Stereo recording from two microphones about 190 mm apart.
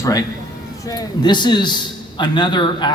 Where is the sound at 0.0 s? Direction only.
20° left (ahead or behind).